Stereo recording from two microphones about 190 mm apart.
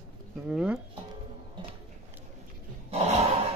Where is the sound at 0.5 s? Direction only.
5° right (ahead or behind).